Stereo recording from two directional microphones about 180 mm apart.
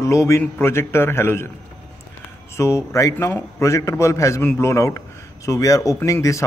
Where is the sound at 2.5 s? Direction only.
15° left (ahead or behind).